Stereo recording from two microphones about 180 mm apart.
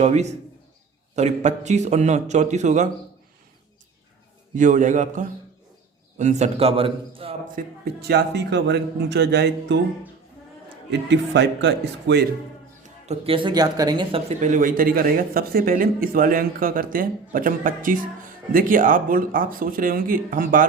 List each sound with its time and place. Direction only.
0.0 s a man's voice: 40° right (ahead or behind)
4.5 s a man's voice: 45° right (ahead or behind)
7.4 s speech: 55° right (ahead or behind); by 9.8 s 70° right (ahead or behind)
11.1 s speech: 75° right (ahead or behind)
13.1 s speech: 30° right (ahead or behind); by 20.7 s 50° right (ahead or behind)